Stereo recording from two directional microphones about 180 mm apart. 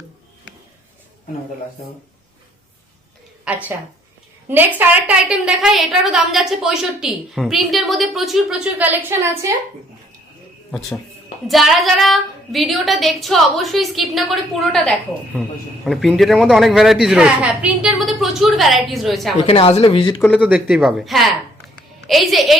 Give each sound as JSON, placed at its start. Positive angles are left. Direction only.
{"t": 3.4, "sound": "a woman's voice", "side_deg": -10}
{"t": 10.7, "sound": "a woman's voice", "side_deg": 0}
{"t": 19.5, "sound": "speech", "side_deg": 30}
{"t": 20.4, "sound": "a woman's voice", "side_deg": -5}